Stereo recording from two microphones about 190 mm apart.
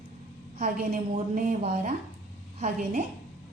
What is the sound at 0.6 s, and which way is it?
A woman's voice, 40° right (ahead or behind).